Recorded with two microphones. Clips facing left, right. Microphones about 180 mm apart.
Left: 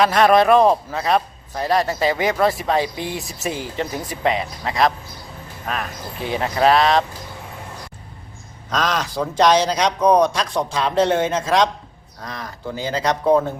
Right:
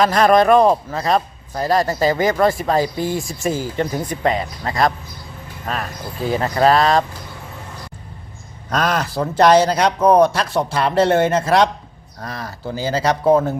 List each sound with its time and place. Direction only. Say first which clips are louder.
0.0 s a man's voice: right 1 dB; centre (ahead or behind)
8.7 s speech: right 2 dB; 10° right (ahead or behind)